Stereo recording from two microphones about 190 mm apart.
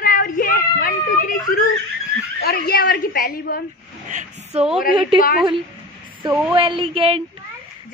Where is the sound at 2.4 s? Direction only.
55° left (ahead or behind).